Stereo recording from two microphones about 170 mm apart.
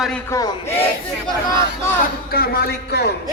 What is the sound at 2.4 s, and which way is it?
Speech, 65° left (ahead or behind).